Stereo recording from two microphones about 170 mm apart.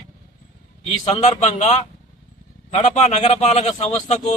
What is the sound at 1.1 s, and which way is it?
Speech, 40° left (ahead or behind).